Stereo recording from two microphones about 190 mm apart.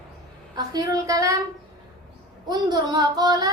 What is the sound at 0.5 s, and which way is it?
Speech, 20° right (ahead or behind).